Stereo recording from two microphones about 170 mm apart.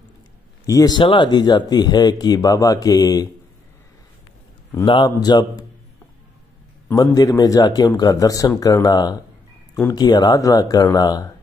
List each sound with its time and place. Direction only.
0.7 s speech: 20° left (ahead or behind)
4.8 s speech: 25° left (ahead or behind)
6.9 s speech: 20° left (ahead or behind)